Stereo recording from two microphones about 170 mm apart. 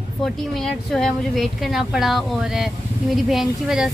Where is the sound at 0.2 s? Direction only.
Centre (ahead or behind).